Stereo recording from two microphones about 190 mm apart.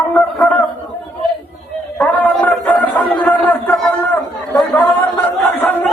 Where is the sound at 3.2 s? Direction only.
10° left (ahead or behind).